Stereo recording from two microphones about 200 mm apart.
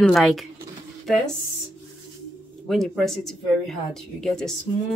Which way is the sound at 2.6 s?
Centre (ahead or behind).